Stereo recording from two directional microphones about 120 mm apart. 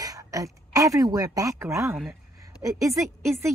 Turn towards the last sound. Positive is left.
turn(degrees=-25)  # may be behind; listen again after turning